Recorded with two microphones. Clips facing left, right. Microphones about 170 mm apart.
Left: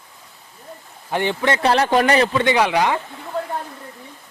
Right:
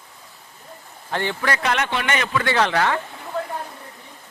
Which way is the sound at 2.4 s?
15° left (ahead or behind).